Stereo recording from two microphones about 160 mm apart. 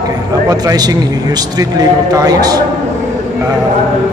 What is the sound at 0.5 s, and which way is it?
A man's voice, 25° right (ahead or behind).